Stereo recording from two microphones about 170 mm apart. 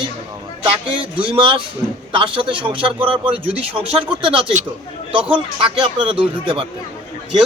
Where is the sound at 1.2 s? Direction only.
30° right (ahead or behind).